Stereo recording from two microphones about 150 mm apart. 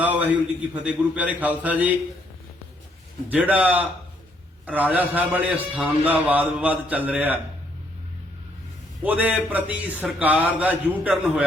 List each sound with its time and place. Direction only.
0.0 s a man's voice: 10° right (ahead or behind)
3.2 s a man's voice: 10° right (ahead or behind)
9.0 s a man's voice: 10° right (ahead or behind)